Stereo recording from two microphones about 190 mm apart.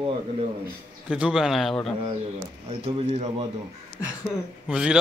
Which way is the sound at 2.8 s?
35° right (ahead or behind).